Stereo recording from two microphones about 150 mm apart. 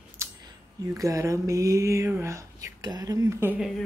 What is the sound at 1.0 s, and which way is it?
Speech, 20° right (ahead or behind).